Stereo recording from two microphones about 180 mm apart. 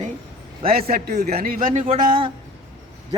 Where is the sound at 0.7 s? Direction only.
55° right (ahead or behind).